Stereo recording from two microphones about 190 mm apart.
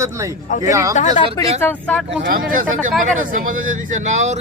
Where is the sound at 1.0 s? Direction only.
35° left (ahead or behind).